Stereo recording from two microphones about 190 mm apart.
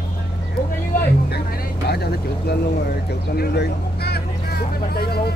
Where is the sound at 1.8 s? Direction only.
55° left (ahead or behind).